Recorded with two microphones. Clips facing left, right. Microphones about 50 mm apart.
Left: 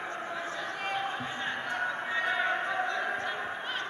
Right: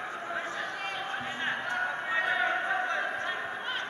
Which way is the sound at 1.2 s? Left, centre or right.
Centre.